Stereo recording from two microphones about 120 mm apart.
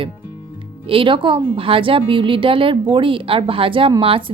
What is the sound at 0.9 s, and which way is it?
A woman's voice, 45° right (ahead or behind).